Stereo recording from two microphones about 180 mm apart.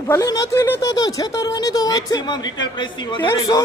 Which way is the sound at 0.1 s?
20° left (ahead or behind).